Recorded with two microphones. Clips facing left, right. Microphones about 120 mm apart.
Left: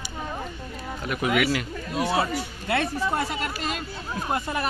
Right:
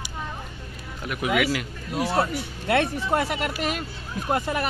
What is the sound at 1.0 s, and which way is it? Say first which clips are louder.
Speech: even; centre (ahead or behind).